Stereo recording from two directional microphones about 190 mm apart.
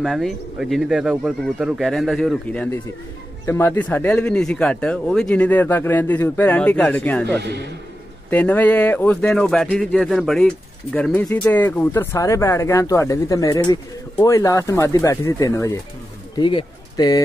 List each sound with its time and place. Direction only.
0.0 s speech: centre (ahead or behind); by 17.2 s 20° left (ahead or behind)